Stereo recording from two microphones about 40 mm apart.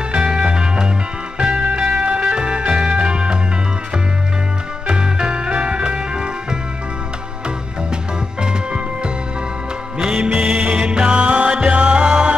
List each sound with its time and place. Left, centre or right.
0.1 s music: right
4.8 s music: right
8.4 s music: right